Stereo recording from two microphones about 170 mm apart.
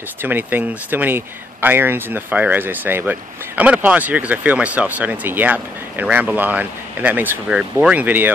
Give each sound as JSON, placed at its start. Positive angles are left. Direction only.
{"t": 0.2, "sound": "speech", "side_deg": -10}